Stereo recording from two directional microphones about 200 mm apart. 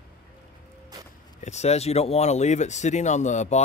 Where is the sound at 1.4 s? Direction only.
35° left (ahead or behind).